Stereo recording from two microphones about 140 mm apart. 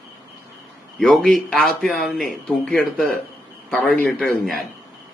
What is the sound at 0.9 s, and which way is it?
A man's voice, 5° left (ahead or behind).